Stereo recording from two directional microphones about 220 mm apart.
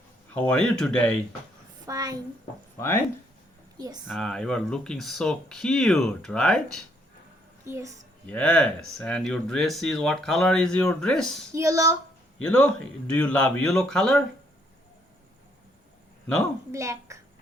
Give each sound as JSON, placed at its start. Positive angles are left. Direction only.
{"t": 0.3, "sound": "speech", "side_deg": 5}
{"t": 1.9, "sound": "a woman's voice", "side_deg": -15}
{"t": 2.7, "sound": "speech", "side_deg": 10}
{"t": 3.8, "sound": "speech", "side_deg": -15}
{"t": 4.0, "sound": "speech", "side_deg": 0}
{"t": 7.6, "sound": "speech", "side_deg": -15}
{"t": 8.3, "sound": "speech", "side_deg": 5}
{"t": 11.5, "sound": "speech", "side_deg": -15}
{"t": 12.4, "sound": "speech", "side_deg": 5}
{"t": 16.7, "sound": "a child's voice", "side_deg": -15}